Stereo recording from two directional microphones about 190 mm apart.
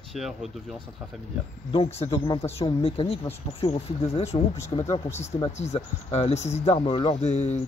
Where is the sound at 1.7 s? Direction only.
35° left (ahead or behind).